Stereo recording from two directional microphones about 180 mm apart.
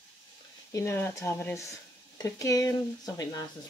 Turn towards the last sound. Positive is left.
turn(degrees=20)  # may be behind; listen again after turning